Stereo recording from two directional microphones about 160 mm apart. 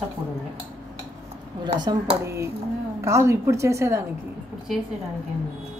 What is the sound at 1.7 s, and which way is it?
A woman's voice, 20° right (ahead or behind).